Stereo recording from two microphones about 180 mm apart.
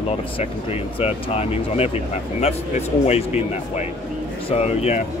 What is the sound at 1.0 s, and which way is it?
Speech, 35° left (ahead or behind).